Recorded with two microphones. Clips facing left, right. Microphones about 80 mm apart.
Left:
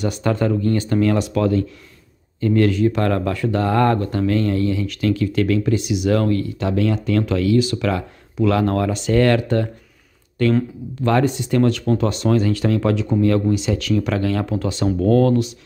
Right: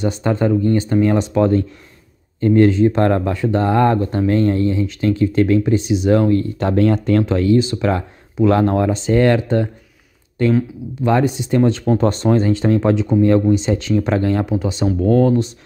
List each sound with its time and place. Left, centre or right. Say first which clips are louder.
0.0 s speech: right 2 dB; right
6.6 s speech: right 4 dB; right; by 14.9 s centre
14.9 s speech: right 1 dB; centre